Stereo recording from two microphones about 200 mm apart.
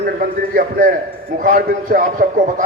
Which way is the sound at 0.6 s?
45° right (ahead or behind).